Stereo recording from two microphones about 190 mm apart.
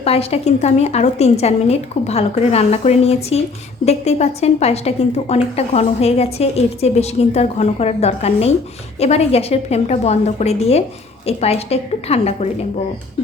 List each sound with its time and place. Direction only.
0.0 s a woman's voice: 30° left (ahead or behind)